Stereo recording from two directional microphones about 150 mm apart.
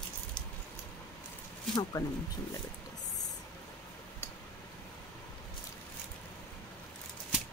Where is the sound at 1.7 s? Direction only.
25° left (ahead or behind).